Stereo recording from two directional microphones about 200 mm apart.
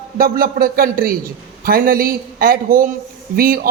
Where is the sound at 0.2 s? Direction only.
45° right (ahead or behind).